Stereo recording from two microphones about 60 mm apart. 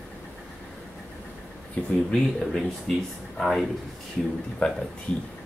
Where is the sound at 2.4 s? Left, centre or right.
Centre.